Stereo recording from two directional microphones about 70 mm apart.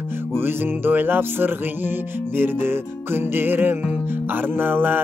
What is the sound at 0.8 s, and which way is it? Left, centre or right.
Music, right.